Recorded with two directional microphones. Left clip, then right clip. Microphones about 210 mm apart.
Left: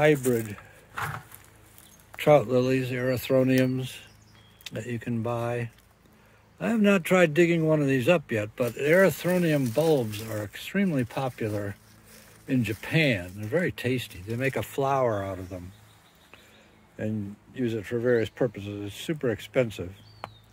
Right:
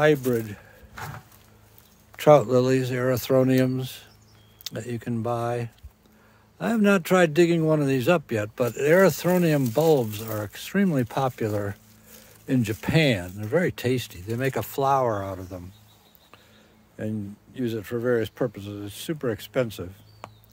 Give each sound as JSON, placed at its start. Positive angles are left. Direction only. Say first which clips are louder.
{"t": 0.0, "sound": "speech", "louder": "right 1 dB", "side_deg": -20}
{"t": 2.2, "sound": "speech", "louder": "right 3 dB", "side_deg": -25}
{"t": 17.6, "sound": "speech", "louder": "even", "side_deg": -15}